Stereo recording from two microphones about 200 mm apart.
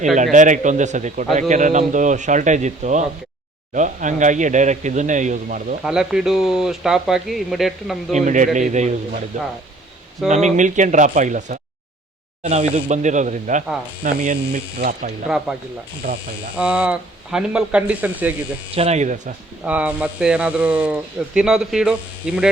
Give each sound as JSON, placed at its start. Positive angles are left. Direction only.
{"t": 0.2, "sound": "a man's voice", "side_deg": -40}
{"t": 5.8, "sound": "speech", "side_deg": -5}
{"t": 8.1, "sound": "a man's voice", "side_deg": -40}
{"t": 16.6, "sound": "speech", "side_deg": -5}
{"t": 18.7, "sound": "a man's voice", "side_deg": -30}
{"t": 19.6, "sound": "speech", "side_deg": -5}